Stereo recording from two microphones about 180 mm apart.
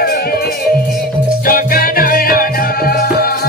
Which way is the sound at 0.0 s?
60° left (ahead or behind).